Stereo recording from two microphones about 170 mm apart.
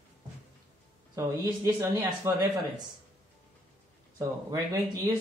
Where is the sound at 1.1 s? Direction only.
15° right (ahead or behind).